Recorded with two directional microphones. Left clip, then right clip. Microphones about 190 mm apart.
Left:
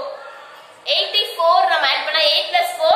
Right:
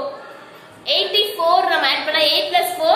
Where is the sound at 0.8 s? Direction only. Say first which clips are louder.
Right 1 dB; 15° right (ahead or behind).